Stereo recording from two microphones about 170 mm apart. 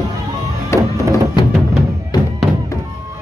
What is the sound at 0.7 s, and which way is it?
Music, 15° left (ahead or behind).